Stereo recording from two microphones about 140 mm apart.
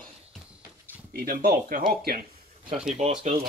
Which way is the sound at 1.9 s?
90° right.